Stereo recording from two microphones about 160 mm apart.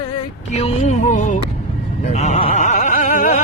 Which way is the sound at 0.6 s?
45° left (ahead or behind).